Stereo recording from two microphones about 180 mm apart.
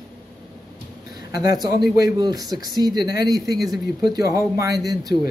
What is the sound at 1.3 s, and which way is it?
Speech, 20° right (ahead or behind).